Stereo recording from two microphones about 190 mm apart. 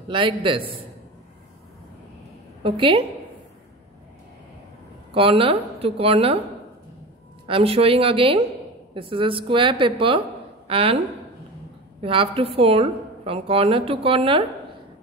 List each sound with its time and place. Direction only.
0.1 s a woman's voice: 25° right (ahead or behind)
2.6 s a woman's voice: 30° right (ahead or behind)
5.1 s a woman's voice: 30° right (ahead or behind)
7.4 s a woman's voice: 30° right (ahead or behind)
12.0 s a woman's voice: 30° right (ahead or behind)